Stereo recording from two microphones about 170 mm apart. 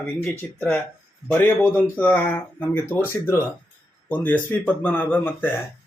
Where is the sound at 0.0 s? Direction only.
10° left (ahead or behind).